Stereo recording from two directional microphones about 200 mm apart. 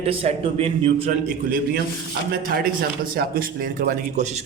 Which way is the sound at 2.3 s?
50° right (ahead or behind).